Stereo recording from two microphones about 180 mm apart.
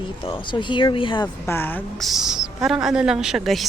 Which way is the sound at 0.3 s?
25° left (ahead or behind).